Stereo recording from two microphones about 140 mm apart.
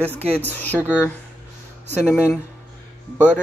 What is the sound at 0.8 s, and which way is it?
Speech, 10° right (ahead or behind).